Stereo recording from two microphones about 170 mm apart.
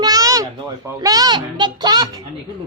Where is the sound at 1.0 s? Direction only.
20° right (ahead or behind).